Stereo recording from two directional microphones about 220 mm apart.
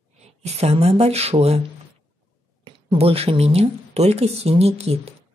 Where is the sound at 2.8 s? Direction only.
25° right (ahead or behind).